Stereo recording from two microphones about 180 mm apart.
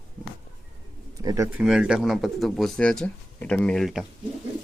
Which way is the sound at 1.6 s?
5° right (ahead or behind).